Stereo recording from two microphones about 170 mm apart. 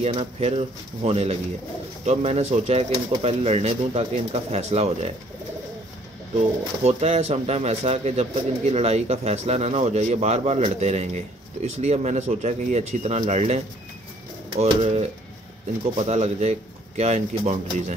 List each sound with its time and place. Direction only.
0.0 s speech: 35° right (ahead or behind)
6.8 s speech: 40° right (ahead or behind)